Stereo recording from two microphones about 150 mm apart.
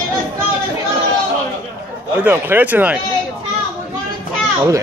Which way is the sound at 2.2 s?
10° right (ahead or behind).